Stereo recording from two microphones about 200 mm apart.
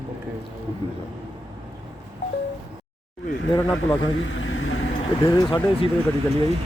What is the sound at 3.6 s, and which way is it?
Speech, 5° left (ahead or behind).